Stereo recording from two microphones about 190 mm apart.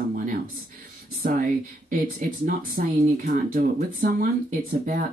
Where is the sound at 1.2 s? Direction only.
45° right (ahead or behind).